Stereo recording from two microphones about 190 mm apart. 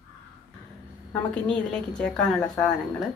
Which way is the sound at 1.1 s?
5° left (ahead or behind).